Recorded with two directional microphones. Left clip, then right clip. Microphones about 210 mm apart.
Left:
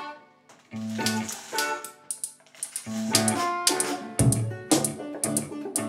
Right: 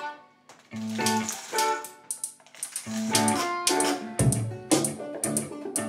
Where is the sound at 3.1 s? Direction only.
20° left (ahead or behind).